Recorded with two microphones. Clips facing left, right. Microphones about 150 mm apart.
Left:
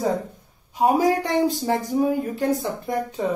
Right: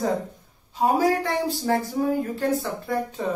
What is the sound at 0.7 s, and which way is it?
A woman's voice, 15° left (ahead or behind).